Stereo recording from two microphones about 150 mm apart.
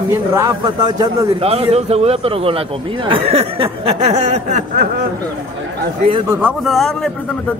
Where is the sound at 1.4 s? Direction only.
40° right (ahead or behind).